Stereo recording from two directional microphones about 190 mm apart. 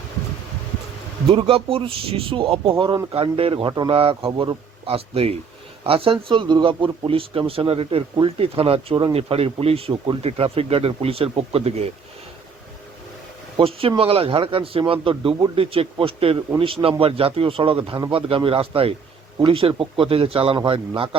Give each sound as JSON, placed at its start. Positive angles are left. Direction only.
{"t": 1.3, "sound": "speech", "side_deg": -30}
{"t": 13.6, "sound": "speech", "side_deg": -30}